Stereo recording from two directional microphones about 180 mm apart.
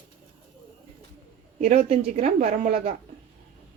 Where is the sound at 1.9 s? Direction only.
40° right (ahead or behind).